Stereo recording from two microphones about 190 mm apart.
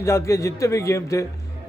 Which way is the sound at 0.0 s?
15° left (ahead or behind).